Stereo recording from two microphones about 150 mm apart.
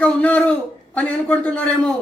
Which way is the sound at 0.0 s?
10° left (ahead or behind).